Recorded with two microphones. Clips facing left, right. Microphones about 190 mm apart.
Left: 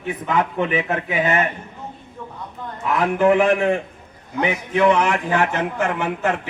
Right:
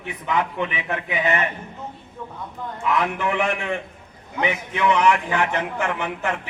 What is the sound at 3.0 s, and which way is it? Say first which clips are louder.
Speech: left 7 dB; 45° left (ahead or behind).